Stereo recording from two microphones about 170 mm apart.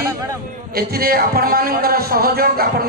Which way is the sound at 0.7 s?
65° right (ahead or behind).